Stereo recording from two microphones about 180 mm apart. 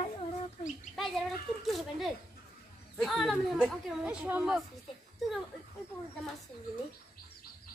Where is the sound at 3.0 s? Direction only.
Centre (ahead or behind).